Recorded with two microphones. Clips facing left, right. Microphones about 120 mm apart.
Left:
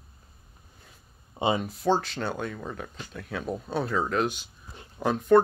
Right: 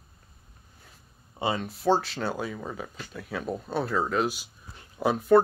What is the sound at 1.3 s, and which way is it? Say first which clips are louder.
Speech: left 3 dB; 20° left (ahead or behind).